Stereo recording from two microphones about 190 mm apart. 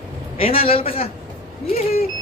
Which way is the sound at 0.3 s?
30° left (ahead or behind).